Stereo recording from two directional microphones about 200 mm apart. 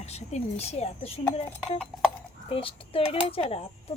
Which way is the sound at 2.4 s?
25° left (ahead or behind).